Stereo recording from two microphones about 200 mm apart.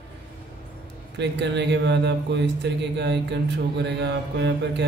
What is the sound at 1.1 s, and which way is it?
Speech, 60° right (ahead or behind).